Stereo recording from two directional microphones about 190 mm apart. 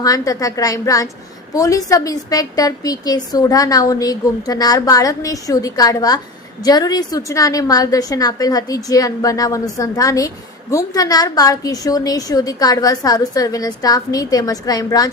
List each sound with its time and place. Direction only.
0.0 s a woman's voice: 20° left (ahead or behind)